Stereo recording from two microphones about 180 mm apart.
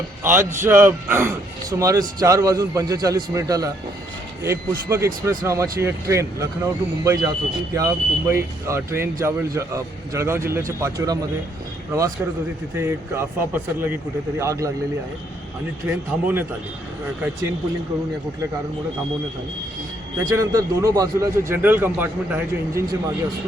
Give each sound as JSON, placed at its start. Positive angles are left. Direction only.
{"t": 0.2, "sound": "a man's voice", "side_deg": -10}
{"t": 16.2, "sound": "speech", "side_deg": -10}
{"t": 20.2, "sound": "speech", "side_deg": -20}